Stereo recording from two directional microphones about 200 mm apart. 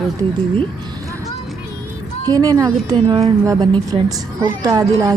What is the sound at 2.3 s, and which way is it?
A woman's voice, 15° right (ahead or behind).